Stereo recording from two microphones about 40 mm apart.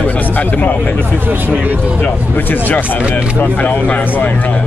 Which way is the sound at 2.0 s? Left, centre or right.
Left.